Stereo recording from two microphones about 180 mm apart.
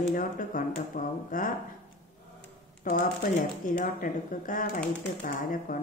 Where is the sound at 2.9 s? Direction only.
50° left (ahead or behind).